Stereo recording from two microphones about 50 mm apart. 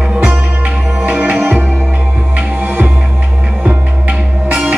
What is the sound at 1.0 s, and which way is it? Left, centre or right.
Music, right.